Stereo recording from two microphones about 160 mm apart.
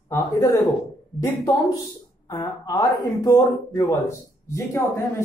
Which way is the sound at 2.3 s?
20° left (ahead or behind).